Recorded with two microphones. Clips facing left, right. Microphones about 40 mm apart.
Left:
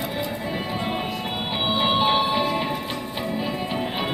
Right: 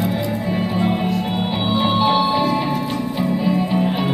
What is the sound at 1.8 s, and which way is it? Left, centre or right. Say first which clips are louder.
Music: right 4 dB; centre.